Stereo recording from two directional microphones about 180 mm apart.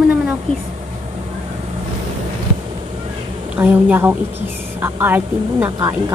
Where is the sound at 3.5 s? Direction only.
10° right (ahead or behind).